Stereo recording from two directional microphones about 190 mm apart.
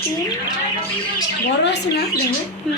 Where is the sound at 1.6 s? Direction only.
65° left (ahead or behind).